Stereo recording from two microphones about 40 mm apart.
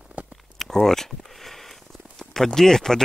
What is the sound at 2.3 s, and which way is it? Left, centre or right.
Speech, centre.